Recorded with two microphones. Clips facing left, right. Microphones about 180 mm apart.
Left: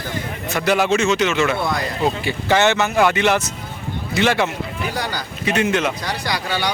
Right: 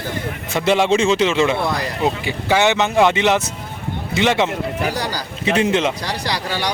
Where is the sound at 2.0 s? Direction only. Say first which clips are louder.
Even; 15° right (ahead or behind).